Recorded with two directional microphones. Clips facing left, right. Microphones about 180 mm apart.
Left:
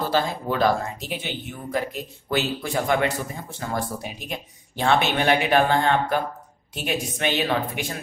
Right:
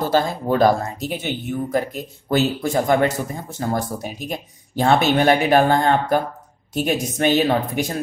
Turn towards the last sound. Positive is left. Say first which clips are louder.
# right 5 dB
turn(degrees=-40)  # may be behind; listen again after turning